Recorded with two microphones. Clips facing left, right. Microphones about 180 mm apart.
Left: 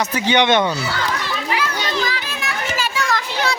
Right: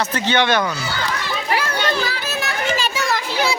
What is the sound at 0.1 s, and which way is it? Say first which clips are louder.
Speech: left 2 dB; 15° left (ahead or behind).